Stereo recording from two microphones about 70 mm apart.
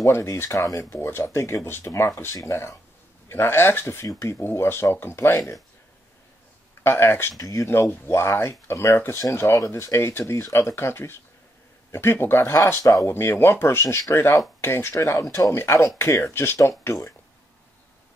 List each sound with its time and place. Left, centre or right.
0.0 s speech: left
3.3 s speech: left
4.5 s speech: left
6.8 s speech: left
7.3 s speech: left
8.1 s speech: left